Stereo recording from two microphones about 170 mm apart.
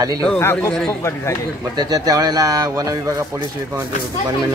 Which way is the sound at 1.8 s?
25° right (ahead or behind).